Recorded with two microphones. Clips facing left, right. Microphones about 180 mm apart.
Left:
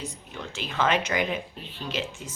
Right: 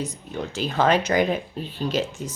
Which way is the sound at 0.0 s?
40° right (ahead or behind).